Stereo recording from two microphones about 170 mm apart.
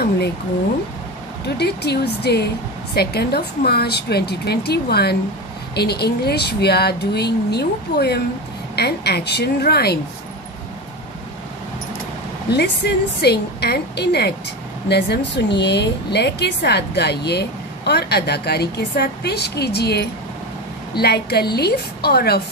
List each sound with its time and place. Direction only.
1.6 s a woman's voice: 75° left (ahead or behind)
12.4 s a woman's voice: 75° left (ahead or behind)